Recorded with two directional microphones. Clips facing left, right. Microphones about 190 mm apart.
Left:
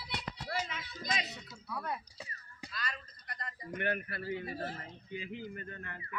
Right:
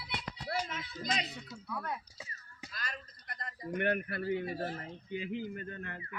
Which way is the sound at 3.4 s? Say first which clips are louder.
Right 4 dB; 50° right (ahead or behind).